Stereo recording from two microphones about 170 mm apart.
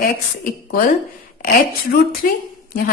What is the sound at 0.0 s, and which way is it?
A woman's voice, 55° left (ahead or behind).